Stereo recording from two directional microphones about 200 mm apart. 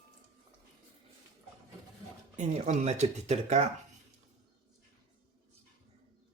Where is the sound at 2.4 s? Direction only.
35° right (ahead or behind).